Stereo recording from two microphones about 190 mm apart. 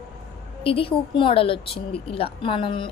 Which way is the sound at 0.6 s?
30° left (ahead or behind).